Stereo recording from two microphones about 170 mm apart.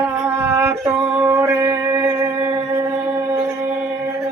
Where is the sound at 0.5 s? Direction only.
15° right (ahead or behind).